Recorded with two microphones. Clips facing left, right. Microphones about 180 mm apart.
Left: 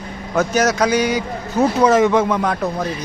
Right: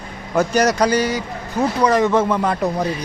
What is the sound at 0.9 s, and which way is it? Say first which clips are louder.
Speech: left 2 dB; 15° left (ahead or behind).